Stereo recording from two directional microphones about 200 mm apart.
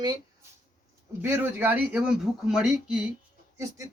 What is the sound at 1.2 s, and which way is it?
Speech, 10° right (ahead or behind).